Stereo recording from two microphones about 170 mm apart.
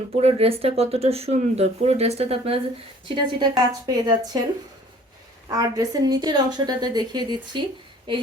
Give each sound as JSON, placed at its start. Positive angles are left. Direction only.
{"t": 0.2, "sound": "a woman's voice", "side_deg": -35}
{"t": 5.5, "sound": "a woman's voice", "side_deg": -20}